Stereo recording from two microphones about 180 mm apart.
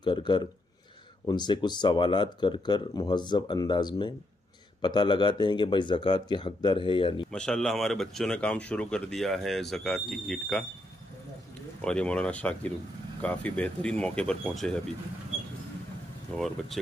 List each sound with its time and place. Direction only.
0.0 s speech: 25° left (ahead or behind)
7.2 s speech: 5° left (ahead or behind)
11.8 s speech: 5° left (ahead or behind)
16.8 s speech: centre (ahead or behind)